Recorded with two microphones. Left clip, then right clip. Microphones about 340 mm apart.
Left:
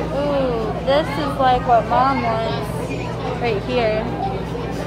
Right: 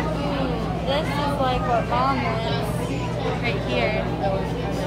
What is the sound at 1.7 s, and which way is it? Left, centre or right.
Speech, left.